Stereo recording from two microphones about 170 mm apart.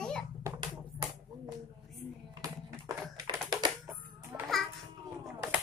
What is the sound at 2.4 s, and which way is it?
Typing, 20° right (ahead or behind).